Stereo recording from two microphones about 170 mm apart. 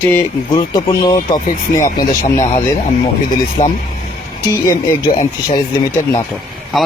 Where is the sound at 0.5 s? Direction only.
25° left (ahead or behind).